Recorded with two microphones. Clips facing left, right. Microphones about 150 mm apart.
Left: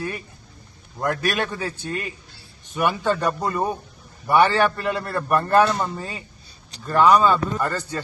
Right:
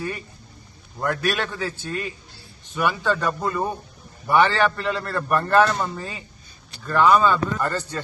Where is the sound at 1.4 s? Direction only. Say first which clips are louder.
Even; 15° left (ahead or behind).